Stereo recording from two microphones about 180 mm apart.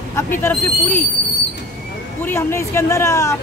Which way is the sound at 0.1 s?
10° left (ahead or behind).